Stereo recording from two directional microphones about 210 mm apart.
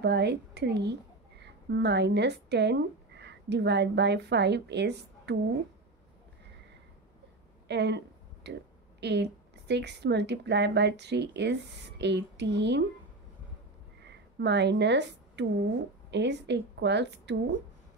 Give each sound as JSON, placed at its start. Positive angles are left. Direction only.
{"t": 0.0, "sound": "a woman's voice", "side_deg": -55}
{"t": 7.6, "sound": "a woman's voice", "side_deg": -55}
{"t": 14.4, "sound": "a woman's voice", "side_deg": -55}